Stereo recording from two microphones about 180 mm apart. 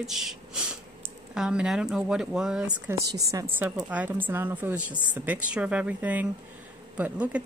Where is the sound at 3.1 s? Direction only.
20° right (ahead or behind).